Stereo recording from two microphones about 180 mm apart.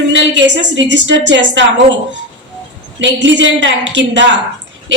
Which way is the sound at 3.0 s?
85° right.